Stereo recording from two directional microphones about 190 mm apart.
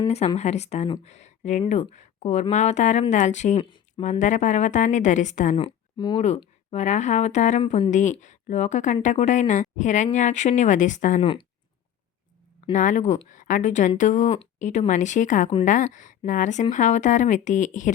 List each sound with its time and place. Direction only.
0.3 s speech: 35° left (ahead or behind)
3.6 s speech: 25° left (ahead or behind)
4.0 s speech: 40° left (ahead or behind)
5.5 s speech: 25° left (ahead or behind); by 11.2 s 40° left (ahead or behind)
11.2 s speech: 30° left (ahead or behind)
12.7 s speech: 40° left (ahead or behind)